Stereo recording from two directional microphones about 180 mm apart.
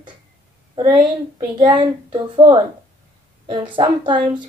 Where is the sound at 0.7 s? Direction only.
25° right (ahead or behind).